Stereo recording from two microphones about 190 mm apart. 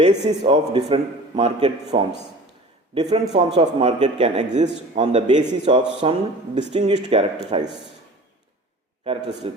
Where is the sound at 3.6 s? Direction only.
30° right (ahead or behind).